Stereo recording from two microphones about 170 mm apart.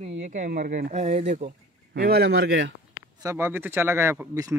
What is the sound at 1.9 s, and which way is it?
Speech, 65° right (ahead or behind).